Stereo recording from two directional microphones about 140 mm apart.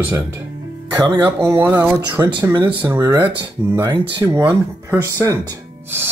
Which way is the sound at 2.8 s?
20° right (ahead or behind).